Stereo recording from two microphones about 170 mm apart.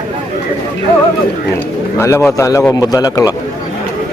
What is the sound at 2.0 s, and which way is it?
A man's voice, 15° left (ahead or behind).